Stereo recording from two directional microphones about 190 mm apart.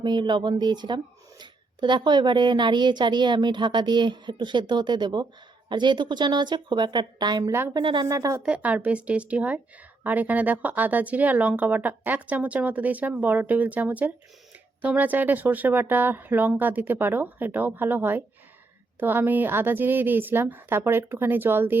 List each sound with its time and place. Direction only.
0.0 s a woman's voice: 25° right (ahead or behind)